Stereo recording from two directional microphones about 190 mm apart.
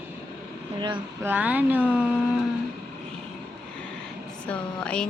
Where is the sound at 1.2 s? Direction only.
10° right (ahead or behind).